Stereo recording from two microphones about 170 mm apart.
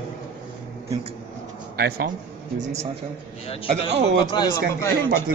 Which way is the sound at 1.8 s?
60° right (ahead or behind).